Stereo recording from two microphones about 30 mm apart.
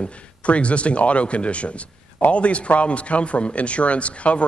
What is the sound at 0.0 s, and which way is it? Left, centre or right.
Speech, left.